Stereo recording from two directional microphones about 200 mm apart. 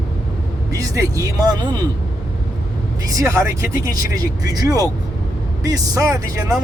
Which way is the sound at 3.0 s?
15° right (ahead or behind).